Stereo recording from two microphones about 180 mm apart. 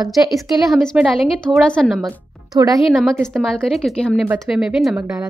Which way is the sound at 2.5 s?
20° right (ahead or behind).